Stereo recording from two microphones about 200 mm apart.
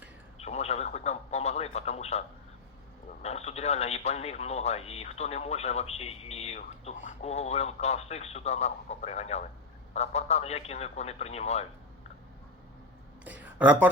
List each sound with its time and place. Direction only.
0.3 s radio: 30° left (ahead or behind)
3.2 s a man's voice: 30° left (ahead or behind)
13.2 s a woman's voice: 10° right (ahead or behind)